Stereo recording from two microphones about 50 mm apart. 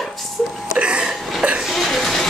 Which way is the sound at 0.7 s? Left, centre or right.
Right.